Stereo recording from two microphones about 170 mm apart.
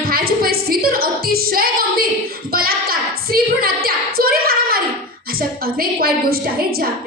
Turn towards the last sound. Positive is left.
turn(degrees=-60)  # may be behind; listen again after turning